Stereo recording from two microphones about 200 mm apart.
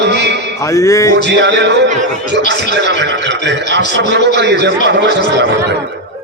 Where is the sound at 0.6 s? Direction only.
15° left (ahead or behind).